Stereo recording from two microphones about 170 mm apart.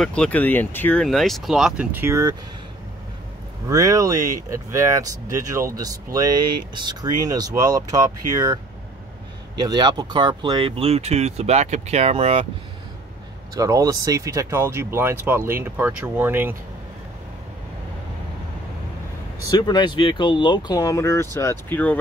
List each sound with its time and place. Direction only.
0.0 s speech: 5° left (ahead or behind); by 2.3 s 15° right (ahead or behind)
3.6 s speech: 20° right (ahead or behind)
9.6 s speech: 25° right (ahead or behind)
13.6 s speech: 20° right (ahead or behind)
19.5 s speech: 25° left (ahead or behind)